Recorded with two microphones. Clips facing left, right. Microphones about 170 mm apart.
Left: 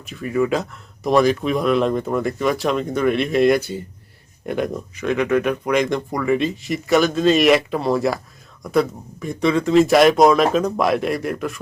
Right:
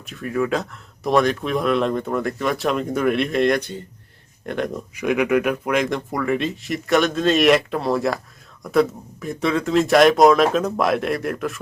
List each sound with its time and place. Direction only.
0.0 s speech: centre (ahead or behind)
4.9 s speech: 10° right (ahead or behind)